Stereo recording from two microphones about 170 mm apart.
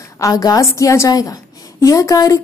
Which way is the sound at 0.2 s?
20° left (ahead or behind).